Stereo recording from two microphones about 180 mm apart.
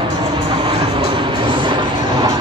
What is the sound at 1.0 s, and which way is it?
Vehicle, 25° right (ahead or behind).